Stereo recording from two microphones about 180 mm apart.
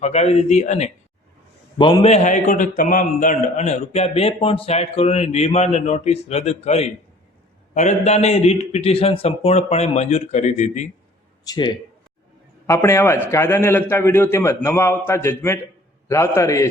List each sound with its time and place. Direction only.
0.0 s a man's voice: 35° left (ahead or behind)
1.8 s speech: 25° left (ahead or behind)
2.0 s a man's voice: 40° left (ahead or behind)
11.4 s a man's voice: 20° left (ahead or behind)